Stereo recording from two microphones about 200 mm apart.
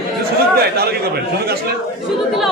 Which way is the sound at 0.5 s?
50° right (ahead or behind).